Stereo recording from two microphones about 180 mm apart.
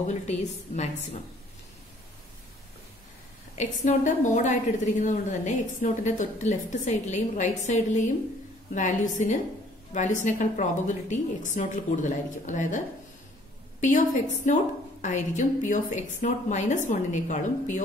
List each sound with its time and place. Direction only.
0.0 s a woman's voice: 40° left (ahead or behind)
3.5 s a woman's voice: 45° left (ahead or behind)